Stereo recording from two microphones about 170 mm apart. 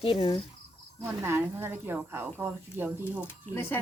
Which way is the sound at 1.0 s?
15° right (ahead or behind).